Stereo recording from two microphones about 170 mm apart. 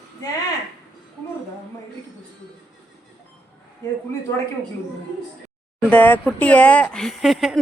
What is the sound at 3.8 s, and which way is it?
Speech, 20° left (ahead or behind).